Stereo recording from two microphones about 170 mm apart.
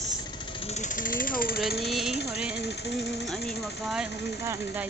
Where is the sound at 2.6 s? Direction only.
80° left.